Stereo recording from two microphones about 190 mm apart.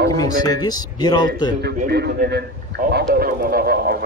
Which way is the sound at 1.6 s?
60° right (ahead or behind).